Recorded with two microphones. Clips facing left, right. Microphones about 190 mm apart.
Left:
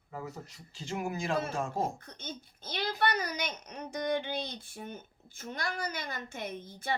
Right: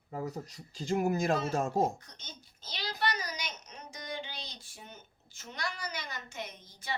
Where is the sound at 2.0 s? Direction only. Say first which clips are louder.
Left 9 dB; 55° left (ahead or behind).